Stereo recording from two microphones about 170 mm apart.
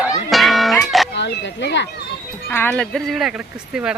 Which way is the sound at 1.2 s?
90° left.